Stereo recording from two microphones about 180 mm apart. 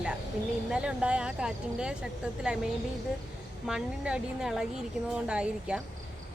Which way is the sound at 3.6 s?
5° right (ahead or behind).